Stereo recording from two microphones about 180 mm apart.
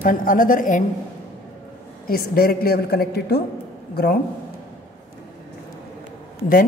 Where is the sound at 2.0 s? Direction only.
55° left (ahead or behind).